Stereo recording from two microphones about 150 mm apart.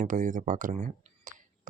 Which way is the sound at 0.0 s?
60° right (ahead or behind).